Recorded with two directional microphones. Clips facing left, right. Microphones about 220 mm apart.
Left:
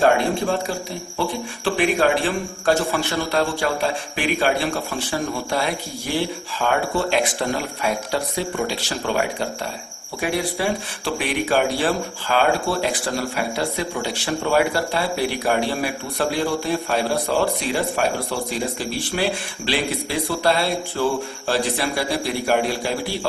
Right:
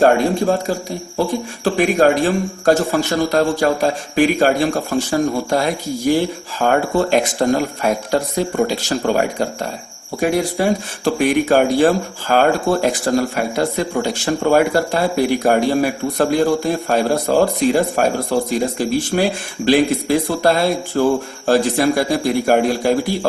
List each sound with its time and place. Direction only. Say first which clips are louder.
0.0 s speech: right 5 dB; 40° right (ahead or behind)